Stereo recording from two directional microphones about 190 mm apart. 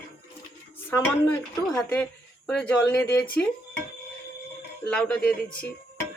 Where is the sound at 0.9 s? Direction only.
15° left (ahead or behind).